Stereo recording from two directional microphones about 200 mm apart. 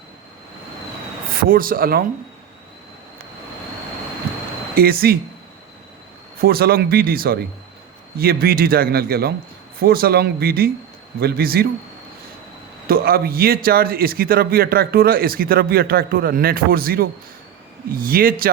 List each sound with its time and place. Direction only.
1.5 s a man's voice: 45° right (ahead or behind)
4.7 s speech: 50° right (ahead or behind)
6.4 s a man's voice: 50° right (ahead or behind)
12.9 s a man's voice: 50° right (ahead or behind)